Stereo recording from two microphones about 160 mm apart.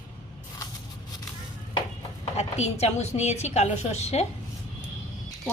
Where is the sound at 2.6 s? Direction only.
45° left (ahead or behind).